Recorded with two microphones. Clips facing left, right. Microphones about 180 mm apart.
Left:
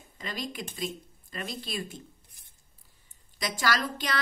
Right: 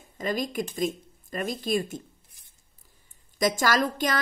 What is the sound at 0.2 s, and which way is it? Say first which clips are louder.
A woman's voice: right 8 dB; 45° right (ahead or behind).